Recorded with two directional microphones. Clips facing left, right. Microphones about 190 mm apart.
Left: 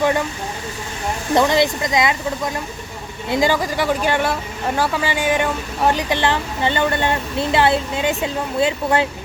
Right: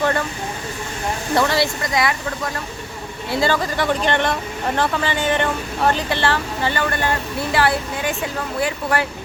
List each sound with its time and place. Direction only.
0.0 s speech: 15° left (ahead or behind)
1.3 s a woman's voice: 20° left (ahead or behind)